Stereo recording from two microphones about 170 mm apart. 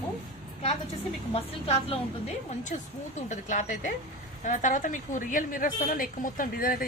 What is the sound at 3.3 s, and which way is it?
A woman's voice, 45° left (ahead or behind).